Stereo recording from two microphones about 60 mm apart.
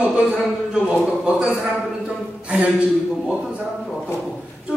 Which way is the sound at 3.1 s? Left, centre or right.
Centre.